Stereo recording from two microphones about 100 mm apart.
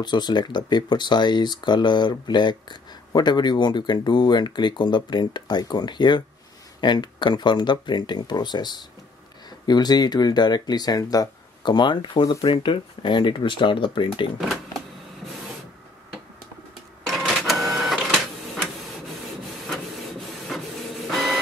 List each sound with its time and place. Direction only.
0.0 s speech: 45° left (ahead or behind)
17.0 s printer: 5° left (ahead or behind)
19.7 s printer: centre (ahead or behind)